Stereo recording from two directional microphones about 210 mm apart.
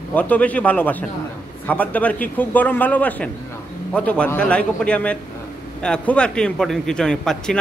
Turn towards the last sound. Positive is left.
turn(degrees=5)  # may be behind; listen again after turning